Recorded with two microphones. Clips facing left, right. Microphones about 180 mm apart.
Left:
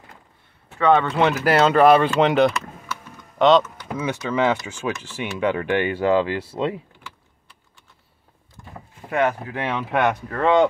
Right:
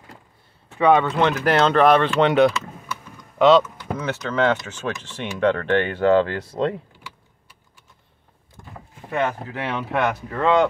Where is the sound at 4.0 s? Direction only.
10° left (ahead or behind).